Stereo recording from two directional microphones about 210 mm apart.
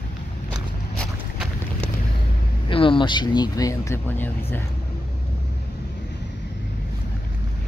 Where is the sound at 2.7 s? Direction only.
25° left (ahead or behind).